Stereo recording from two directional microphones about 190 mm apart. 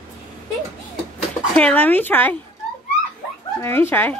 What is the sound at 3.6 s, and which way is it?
Speech, 10° left (ahead or behind).